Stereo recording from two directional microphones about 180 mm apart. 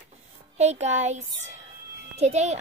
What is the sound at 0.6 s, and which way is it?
A child's voice, 35° right (ahead or behind).